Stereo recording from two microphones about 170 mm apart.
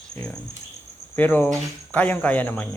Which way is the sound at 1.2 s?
10° left (ahead or behind).